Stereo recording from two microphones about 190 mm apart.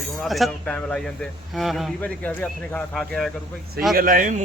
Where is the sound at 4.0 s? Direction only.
45° right (ahead or behind).